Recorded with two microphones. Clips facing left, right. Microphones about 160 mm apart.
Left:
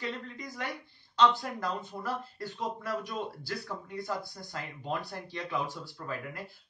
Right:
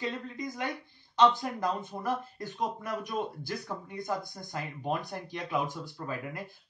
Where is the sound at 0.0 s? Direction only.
20° right (ahead or behind).